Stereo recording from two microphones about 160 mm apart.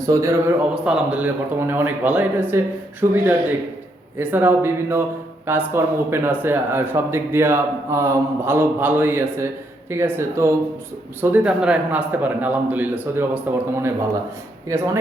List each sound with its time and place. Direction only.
0.0 s a man's voice: 20° right (ahead or behind)
0.7 s speech: 5° right (ahead or behind)
4.2 s speech: 10° right (ahead or behind)